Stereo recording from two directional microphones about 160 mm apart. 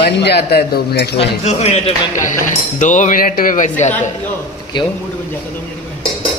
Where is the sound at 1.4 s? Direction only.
45° left (ahead or behind).